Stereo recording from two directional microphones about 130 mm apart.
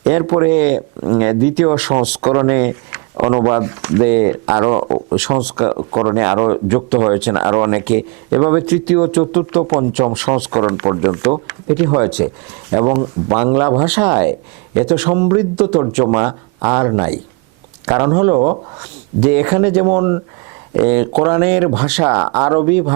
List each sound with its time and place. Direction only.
0.1 s speech: 25° right (ahead or behind)
5.1 s speech: 15° right (ahead or behind)
5.5 s speech: 25° right (ahead or behind)
16.1 s speech: 20° right (ahead or behind)